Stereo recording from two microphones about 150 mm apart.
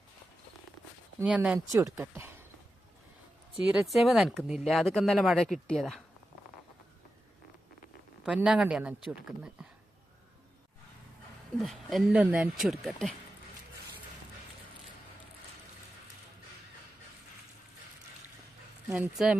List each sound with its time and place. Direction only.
1.2 s speech: 5° right (ahead or behind)
1.5 s speech: 20° right (ahead or behind)
3.6 s speech: 5° right (ahead or behind)
8.2 s speech: 5° right (ahead or behind)
11.6 s speech: centre (ahead or behind)
18.9 s speech: 5° right (ahead or behind)